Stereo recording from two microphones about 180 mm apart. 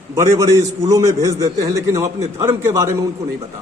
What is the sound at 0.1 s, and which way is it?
A man's voice, 15° right (ahead or behind).